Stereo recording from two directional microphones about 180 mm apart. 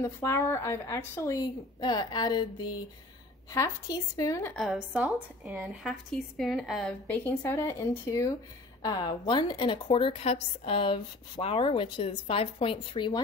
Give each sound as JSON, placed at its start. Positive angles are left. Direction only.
{"t": 0.0, "sound": "a woman's voice", "side_deg": 15}
{"t": 4.6, "sound": "a woman's voice", "side_deg": -5}